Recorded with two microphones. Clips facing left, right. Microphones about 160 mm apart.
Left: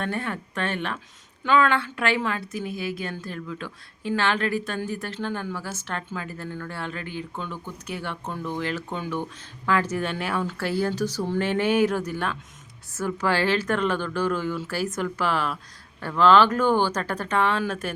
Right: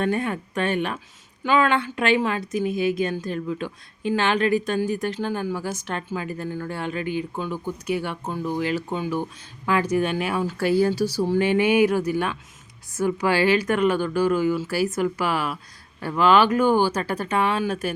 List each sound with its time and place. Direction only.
0.0 s a woman's voice: 15° right (ahead or behind)